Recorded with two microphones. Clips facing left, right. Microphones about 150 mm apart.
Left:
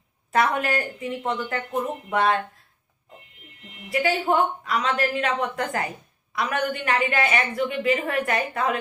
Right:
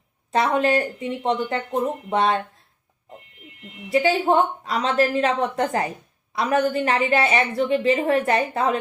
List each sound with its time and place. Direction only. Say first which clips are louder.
0.3 s a woman's voice: right 3 dB; 25° right (ahead or behind)
3.9 s a woman's voice: right 4 dB; 25° right (ahead or behind)